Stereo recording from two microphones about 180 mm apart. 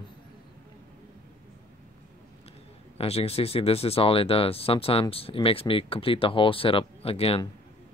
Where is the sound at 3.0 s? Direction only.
35° left (ahead or behind).